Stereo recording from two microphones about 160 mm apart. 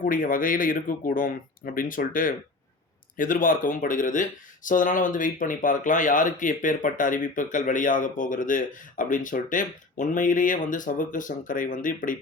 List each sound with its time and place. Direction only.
0.0 s speech: 60° left (ahead or behind)